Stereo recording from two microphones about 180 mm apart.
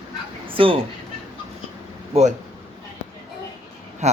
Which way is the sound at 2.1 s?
40° right (ahead or behind).